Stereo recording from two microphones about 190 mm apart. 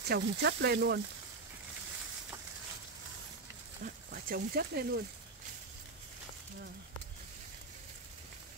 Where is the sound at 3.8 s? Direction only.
45° right (ahead or behind).